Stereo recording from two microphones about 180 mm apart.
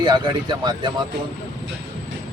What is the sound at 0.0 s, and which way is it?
Speech, 25° right (ahead or behind).